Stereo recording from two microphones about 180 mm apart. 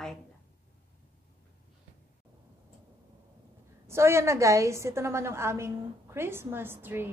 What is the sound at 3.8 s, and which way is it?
A woman's voice, 15° right (ahead or behind).